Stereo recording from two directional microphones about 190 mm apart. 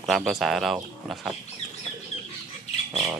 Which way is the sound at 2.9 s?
20° right (ahead or behind).